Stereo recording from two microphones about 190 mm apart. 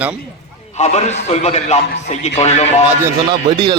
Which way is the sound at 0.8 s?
35° left (ahead or behind).